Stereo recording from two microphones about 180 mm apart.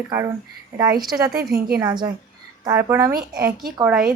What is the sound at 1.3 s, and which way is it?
Speech, 60° right (ahead or behind).